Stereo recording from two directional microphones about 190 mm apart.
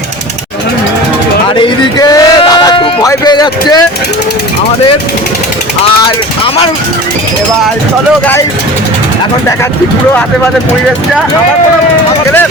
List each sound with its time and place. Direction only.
1.5 s speech: 25° left (ahead or behind)